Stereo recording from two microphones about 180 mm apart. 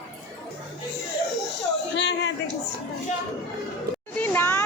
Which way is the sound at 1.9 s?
75° left (ahead or behind).